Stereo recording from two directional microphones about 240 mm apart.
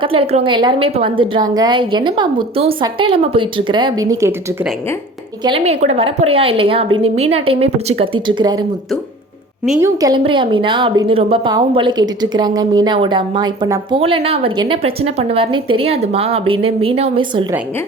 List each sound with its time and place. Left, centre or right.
0.0 s a woman's voice: right
5.4 s a woman's voice: right
9.8 s a woman's voice: centre